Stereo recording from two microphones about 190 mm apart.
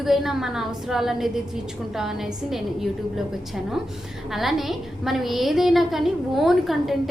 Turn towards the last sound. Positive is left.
turn(degrees=0)  # may be behind; listen again after turning